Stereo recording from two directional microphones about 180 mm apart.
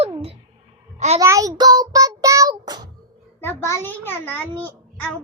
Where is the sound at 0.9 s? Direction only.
40° right (ahead or behind).